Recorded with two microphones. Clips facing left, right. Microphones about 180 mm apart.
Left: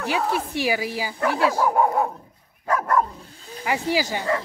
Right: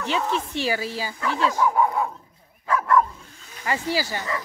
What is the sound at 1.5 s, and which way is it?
Dog, 40° left (ahead or behind).